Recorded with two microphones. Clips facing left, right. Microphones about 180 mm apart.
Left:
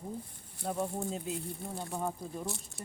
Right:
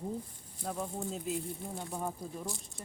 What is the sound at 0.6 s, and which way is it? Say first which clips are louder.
Speech: left 3 dB; 10° left (ahead or behind).